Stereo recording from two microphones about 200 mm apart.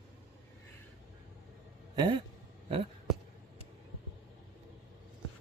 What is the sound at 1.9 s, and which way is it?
Speech, 20° right (ahead or behind).